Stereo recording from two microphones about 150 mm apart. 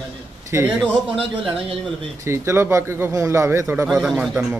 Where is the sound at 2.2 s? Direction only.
15° right (ahead or behind).